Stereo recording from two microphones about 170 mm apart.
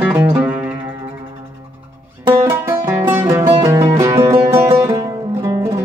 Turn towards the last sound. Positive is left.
turn(degrees=-15)  # may be behind; listen again after turning